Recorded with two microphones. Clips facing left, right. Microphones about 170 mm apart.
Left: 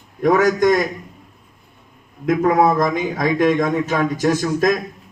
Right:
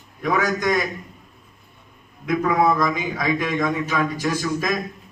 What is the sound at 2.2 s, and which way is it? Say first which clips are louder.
A man's voice: left 4 dB; 45° left (ahead or behind).